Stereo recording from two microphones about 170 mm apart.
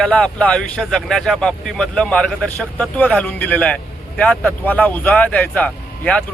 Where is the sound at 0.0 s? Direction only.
5° left (ahead or behind).